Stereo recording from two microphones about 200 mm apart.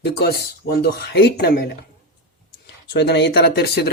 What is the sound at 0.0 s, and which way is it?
Speech, 55° left (ahead or behind).